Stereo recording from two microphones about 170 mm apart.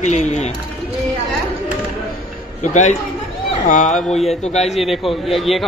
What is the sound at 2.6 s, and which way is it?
A man's voice, 45° left (ahead or behind).